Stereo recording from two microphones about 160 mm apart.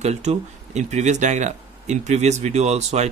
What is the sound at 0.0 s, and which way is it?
Speech, 45° right (ahead or behind).